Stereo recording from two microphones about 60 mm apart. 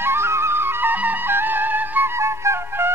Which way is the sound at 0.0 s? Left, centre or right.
Right.